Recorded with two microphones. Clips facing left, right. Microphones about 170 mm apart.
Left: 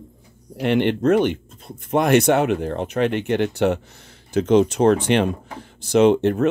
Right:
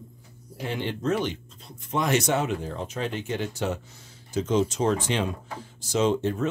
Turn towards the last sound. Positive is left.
turn(degrees=65)  # may be behind; listen again after turning